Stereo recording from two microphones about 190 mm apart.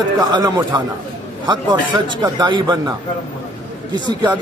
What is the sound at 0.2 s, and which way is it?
Speech, 20° right (ahead or behind).